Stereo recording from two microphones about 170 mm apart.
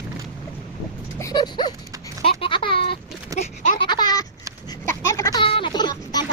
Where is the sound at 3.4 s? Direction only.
50° left (ahead or behind).